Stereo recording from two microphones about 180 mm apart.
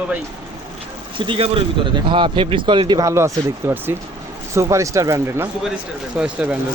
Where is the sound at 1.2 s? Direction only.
30° right (ahead or behind).